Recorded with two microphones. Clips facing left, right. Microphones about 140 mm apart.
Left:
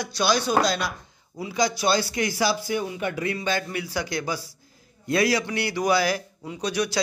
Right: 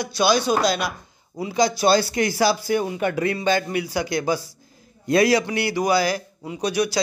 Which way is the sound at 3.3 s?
20° right (ahead or behind).